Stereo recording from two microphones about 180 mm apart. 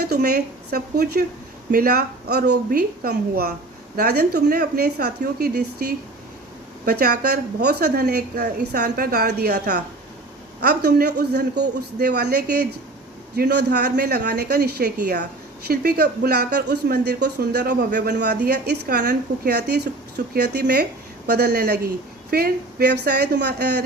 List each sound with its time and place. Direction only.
0.0 s speech: 65° right (ahead or behind)